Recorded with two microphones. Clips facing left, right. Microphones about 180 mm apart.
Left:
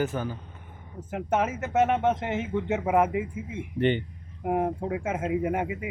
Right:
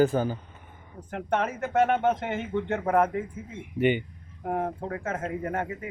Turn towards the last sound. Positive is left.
turn(degrees=10)  # may be behind; listen again after turning